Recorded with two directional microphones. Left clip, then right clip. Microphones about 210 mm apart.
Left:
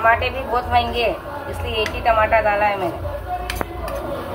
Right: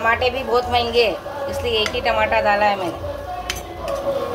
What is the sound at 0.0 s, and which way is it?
A woman's voice, 40° right (ahead or behind).